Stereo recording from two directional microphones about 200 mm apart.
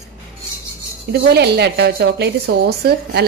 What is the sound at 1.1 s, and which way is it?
A woman's voice, 55° right (ahead or behind).